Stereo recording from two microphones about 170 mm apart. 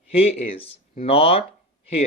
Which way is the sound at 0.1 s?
40° left (ahead or behind).